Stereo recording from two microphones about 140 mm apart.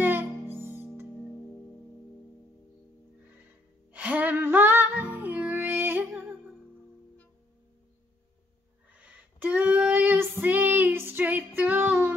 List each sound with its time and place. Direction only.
0.0 s music: 15° right (ahead or behind)
3.9 s music: 10° right (ahead or behind)
8.9 s female singing: 10° right (ahead or behind)